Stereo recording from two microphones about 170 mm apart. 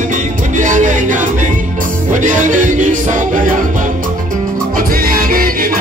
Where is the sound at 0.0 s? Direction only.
50° right (ahead or behind).